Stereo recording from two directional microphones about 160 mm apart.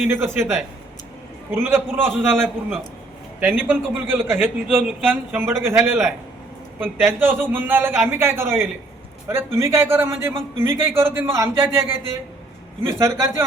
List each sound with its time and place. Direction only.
0.1 s a man's voice: 15° right (ahead or behind)
13.0 s a man's voice: 15° right (ahead or behind)